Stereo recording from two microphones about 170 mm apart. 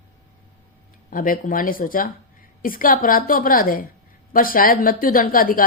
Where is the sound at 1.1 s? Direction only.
55° left (ahead or behind).